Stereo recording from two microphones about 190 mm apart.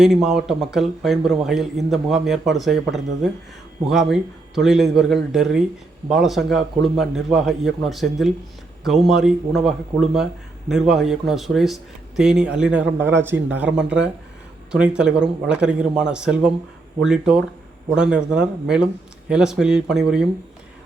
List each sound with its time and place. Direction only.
0.0 s speech: centre (ahead or behind)